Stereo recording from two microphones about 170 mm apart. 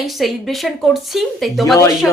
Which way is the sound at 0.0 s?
Centre (ahead or behind).